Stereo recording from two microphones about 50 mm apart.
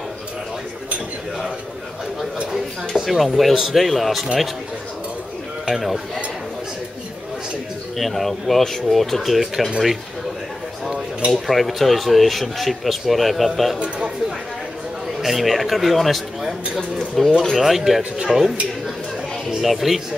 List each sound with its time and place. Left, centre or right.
3.0 s speech: centre
5.7 s speech: centre
8.0 s speech: centre
10.9 s dishes: right
11.3 s speech: centre
15.2 s speech: centre
19.5 s speech: centre